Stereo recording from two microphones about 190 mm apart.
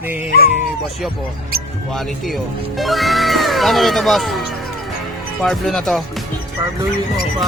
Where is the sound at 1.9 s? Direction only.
Centre (ahead or behind).